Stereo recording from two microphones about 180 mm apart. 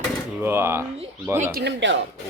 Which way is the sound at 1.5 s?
65° right (ahead or behind).